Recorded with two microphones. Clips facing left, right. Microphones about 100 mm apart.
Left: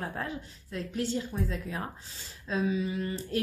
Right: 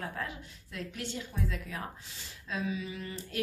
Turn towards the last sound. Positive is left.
turn(degrees=45)  # may be behind; listen again after turning